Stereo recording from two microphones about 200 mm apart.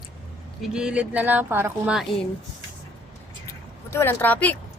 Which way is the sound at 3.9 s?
10° left (ahead or behind).